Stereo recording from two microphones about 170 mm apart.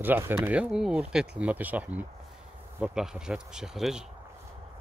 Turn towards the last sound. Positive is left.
turn(degrees=0)  # may be behind; listen again after turning